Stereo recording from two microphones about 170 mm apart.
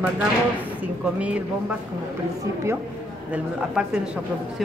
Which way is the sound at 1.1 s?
5° right (ahead or behind).